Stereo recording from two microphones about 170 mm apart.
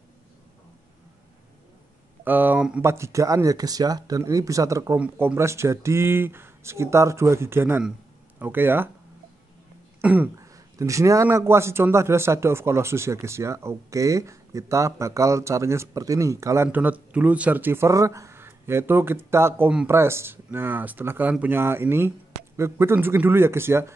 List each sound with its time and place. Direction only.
2.2 s speech: 10° right (ahead or behind)
10.0 s speech: 10° right (ahead or behind)